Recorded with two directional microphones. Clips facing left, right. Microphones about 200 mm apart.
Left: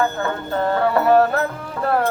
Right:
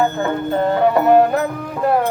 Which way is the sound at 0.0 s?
20° right (ahead or behind).